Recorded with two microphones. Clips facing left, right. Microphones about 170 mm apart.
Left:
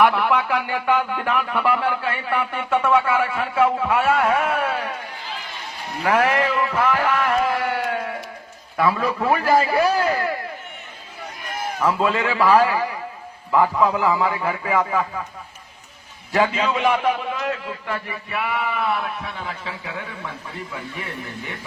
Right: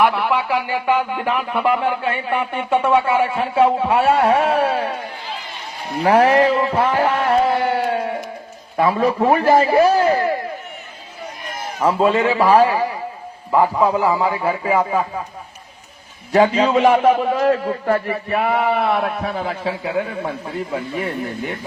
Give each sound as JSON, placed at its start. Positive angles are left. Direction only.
{"t": 0.0, "sound": "speech", "side_deg": -10}
{"t": 5.9, "sound": "a sound", "side_deg": -30}
{"t": 8.7, "sound": "a man's voice", "side_deg": -30}
{"t": 11.8, "sound": "a man's voice", "side_deg": -35}
{"t": 12.1, "sound": "speech", "side_deg": -25}
{"t": 12.4, "sound": "a man's voice", "side_deg": -40}
{"t": 13.6, "sound": "speech", "side_deg": -25}
{"t": 16.3, "sound": "a man's voice", "side_deg": -35}